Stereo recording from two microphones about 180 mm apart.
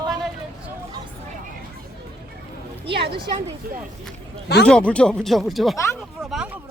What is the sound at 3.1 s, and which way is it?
Speech, 25° right (ahead or behind).